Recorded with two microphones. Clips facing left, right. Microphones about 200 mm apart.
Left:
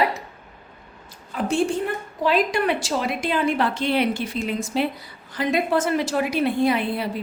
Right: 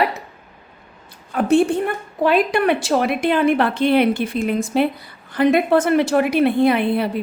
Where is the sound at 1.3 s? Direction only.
60° right (ahead or behind).